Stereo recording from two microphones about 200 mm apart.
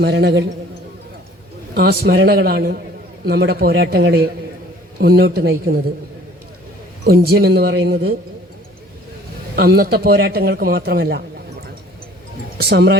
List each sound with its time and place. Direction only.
0.0 s a man's voice: 55° right (ahead or behind)
1.7 s a man's voice: 50° right (ahead or behind)
7.0 s a man's voice: 50° right (ahead or behind)
9.6 s a man's voice: 50° right (ahead or behind)
12.5 s a man's voice: 55° right (ahead or behind)